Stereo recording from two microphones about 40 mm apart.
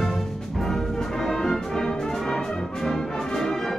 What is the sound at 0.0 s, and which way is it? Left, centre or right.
Music, centre.